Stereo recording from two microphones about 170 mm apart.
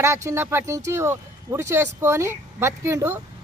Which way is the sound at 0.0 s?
15° right (ahead or behind).